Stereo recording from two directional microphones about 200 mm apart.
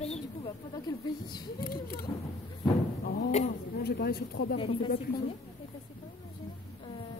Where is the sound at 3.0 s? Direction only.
50° left (ahead or behind).